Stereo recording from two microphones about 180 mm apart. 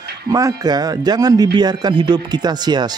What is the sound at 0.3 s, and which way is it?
Speech, 20° right (ahead or behind).